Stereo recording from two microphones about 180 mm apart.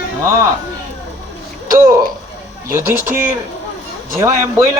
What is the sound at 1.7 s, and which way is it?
Speech, 15° right (ahead or behind).